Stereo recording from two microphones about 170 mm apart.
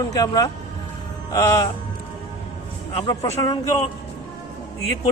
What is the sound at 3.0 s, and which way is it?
Speech, 20° left (ahead or behind).